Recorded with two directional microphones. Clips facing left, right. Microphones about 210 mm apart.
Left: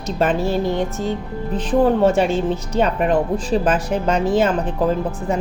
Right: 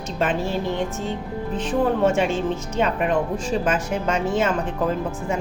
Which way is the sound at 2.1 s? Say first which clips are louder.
Left 4 dB; 35° left (ahead or behind).